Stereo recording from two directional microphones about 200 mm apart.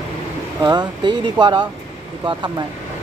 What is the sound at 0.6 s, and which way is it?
Speech, 20° right (ahead or behind).